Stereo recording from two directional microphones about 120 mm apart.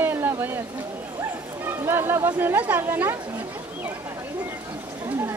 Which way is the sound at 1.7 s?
20° right (ahead or behind).